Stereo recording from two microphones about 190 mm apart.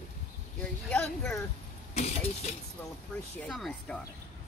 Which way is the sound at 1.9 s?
35° left (ahead or behind).